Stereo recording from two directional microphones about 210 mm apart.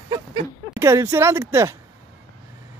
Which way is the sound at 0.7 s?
15° right (ahead or behind).